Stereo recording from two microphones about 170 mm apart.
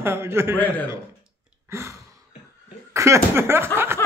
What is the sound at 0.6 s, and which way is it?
Speech, 10° left (ahead or behind).